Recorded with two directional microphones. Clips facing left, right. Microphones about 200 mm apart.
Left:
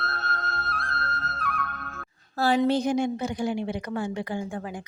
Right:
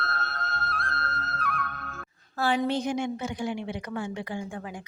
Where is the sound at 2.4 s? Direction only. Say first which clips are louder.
Left 4 dB; 35° left (ahead or behind).